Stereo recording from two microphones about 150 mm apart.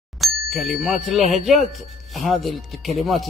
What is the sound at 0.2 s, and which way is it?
A man's voice, centre (ahead or behind).